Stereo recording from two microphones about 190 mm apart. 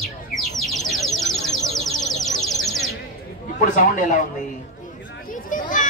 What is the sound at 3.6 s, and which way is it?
Speech, 45° left (ahead or behind).